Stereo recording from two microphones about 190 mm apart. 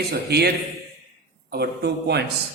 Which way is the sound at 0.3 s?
60° right (ahead or behind).